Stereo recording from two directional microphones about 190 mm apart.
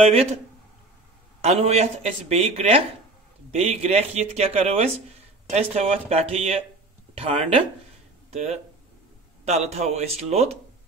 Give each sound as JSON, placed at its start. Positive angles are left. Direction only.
{"t": 0.0, "sound": "speech", "side_deg": -30}
{"t": 1.4, "sound": "speech", "side_deg": -35}